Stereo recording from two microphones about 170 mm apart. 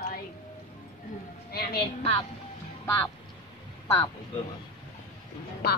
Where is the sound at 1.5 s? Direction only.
65° left (ahead or behind).